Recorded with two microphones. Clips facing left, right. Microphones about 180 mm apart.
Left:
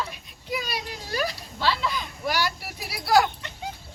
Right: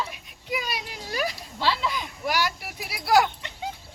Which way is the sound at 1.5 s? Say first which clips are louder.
Even; 20° right (ahead or behind).